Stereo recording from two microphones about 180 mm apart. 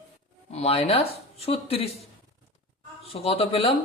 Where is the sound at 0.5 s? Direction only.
35° left (ahead or behind).